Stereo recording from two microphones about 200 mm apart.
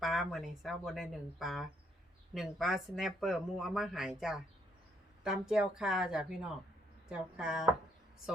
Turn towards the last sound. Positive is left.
turn(degrees=-5)  # may be behind; listen again after turning